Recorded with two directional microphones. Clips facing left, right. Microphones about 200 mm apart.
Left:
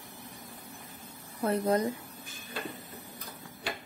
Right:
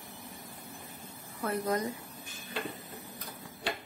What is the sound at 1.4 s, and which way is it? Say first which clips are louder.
Speech: left 4 dB; 30° left (ahead or behind).